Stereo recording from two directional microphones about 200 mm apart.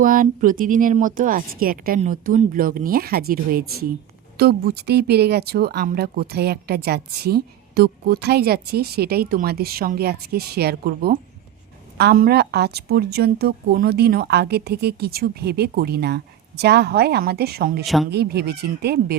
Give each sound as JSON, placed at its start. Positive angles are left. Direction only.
{"t": 0.0, "sound": "speech", "side_deg": -45}
{"t": 17.8, "sound": "speech", "side_deg": 0}
{"t": 18.1, "sound": "speech", "side_deg": -55}